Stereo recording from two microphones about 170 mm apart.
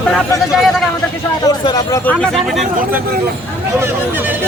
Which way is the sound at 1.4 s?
25° left (ahead or behind).